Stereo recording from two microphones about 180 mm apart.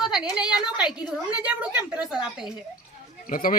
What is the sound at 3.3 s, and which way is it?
Speech, 50° left (ahead or behind).